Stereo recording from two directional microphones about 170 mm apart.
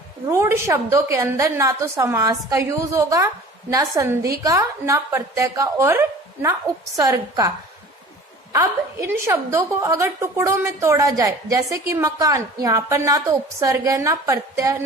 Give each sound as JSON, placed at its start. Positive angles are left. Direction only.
{"t": 0.3, "sound": "a woman's voice", "side_deg": -15}
{"t": 8.5, "sound": "a woman's voice", "side_deg": -15}